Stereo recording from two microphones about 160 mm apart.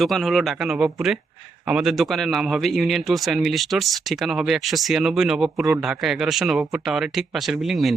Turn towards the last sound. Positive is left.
turn(degrees=0)  # may be behind; listen again after turning